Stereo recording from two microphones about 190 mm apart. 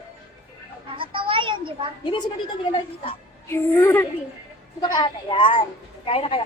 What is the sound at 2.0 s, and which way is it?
Speech, 25° left (ahead or behind).